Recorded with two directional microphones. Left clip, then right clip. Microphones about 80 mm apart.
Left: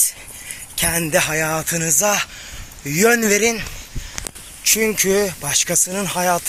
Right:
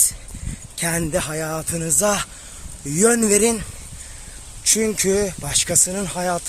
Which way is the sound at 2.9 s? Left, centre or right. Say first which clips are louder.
Left 2 dB; right.